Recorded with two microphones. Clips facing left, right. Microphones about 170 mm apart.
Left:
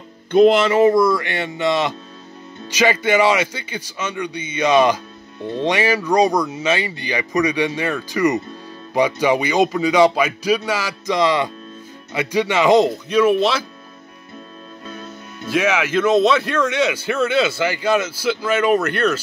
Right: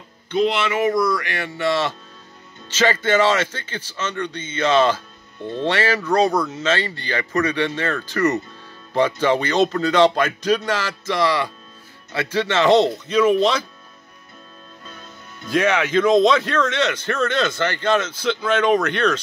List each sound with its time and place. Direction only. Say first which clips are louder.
0.3 s speech: left 7 dB; 45° left (ahead or behind); by 13.7 s 5° left (ahead or behind)
15.5 s speech: even; 5° left (ahead or behind)